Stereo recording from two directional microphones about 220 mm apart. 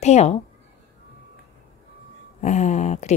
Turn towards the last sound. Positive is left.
turn(degrees=30)  # may be behind; listen again after turning